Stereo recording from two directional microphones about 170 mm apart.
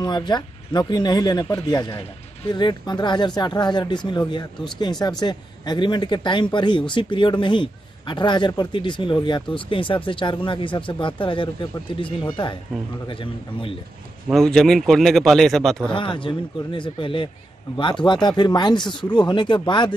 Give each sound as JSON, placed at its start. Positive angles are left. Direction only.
{"t": 0.0, "sound": "speech", "side_deg": 25}
{"t": 14.3, "sound": "speech", "side_deg": 5}
{"t": 15.9, "sound": "speech", "side_deg": 30}